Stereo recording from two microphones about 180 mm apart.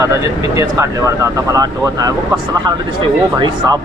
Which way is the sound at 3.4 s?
25° right (ahead or behind).